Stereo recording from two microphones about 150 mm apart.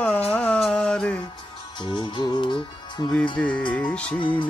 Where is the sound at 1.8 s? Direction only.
30° left (ahead or behind).